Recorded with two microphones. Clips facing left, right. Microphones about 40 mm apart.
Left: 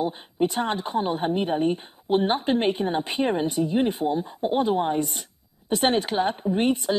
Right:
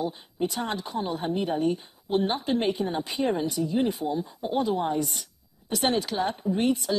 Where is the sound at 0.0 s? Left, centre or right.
Left.